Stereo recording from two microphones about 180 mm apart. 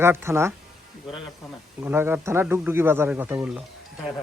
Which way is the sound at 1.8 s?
15° right (ahead or behind).